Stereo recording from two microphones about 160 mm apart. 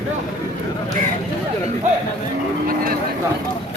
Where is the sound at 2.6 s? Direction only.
65° right (ahead or behind).